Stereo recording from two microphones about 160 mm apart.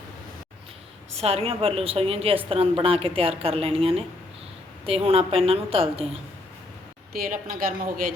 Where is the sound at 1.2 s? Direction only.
40° right (ahead or behind).